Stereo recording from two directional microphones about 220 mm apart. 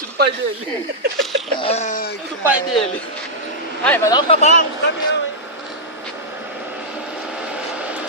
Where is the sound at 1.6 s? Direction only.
30° left (ahead or behind).